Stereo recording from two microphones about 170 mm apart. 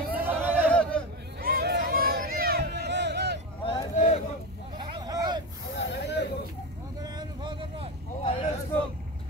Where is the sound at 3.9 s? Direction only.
45° left (ahead or behind).